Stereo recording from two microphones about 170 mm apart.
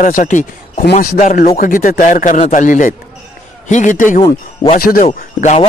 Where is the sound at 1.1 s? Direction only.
45° left (ahead or behind); by 5.0 s 60° left (ahead or behind).